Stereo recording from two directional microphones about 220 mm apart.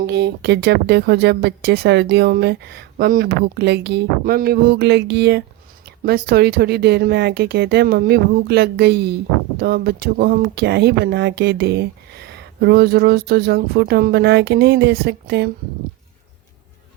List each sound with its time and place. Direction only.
0.0 s speech: 45° right (ahead or behind)